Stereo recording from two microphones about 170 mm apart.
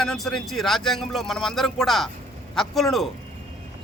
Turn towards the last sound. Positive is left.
turn(degrees=0)  # may be behind; listen again after turning